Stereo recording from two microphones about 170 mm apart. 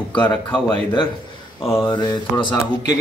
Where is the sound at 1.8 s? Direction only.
25° left (ahead or behind).